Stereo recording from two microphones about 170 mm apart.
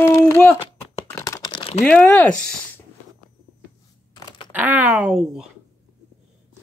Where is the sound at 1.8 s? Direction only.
10° left (ahead or behind).